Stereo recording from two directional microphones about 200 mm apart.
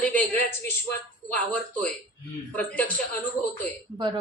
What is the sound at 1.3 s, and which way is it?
A woman's voice, 5° left (ahead or behind).